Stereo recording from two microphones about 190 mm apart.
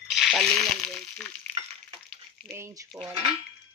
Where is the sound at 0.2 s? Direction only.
Centre (ahead or behind).